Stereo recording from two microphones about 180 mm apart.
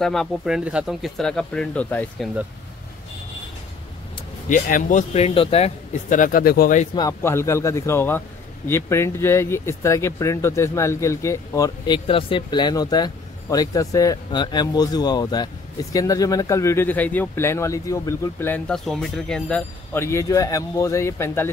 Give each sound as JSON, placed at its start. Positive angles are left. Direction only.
{"t": 0.0, "sound": "speech", "side_deg": 0}
{"t": 4.5, "sound": "a man's voice", "side_deg": 50}
{"t": 7.0, "sound": "speech", "side_deg": 15}